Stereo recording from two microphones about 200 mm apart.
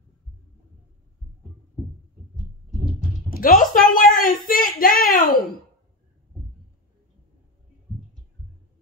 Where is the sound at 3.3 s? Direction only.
45° left (ahead or behind).